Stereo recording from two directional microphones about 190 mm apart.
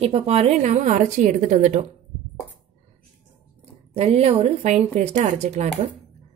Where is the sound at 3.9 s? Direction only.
30° right (ahead or behind).